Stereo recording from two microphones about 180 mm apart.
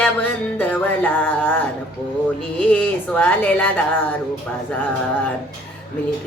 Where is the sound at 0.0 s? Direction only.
10° left (ahead or behind).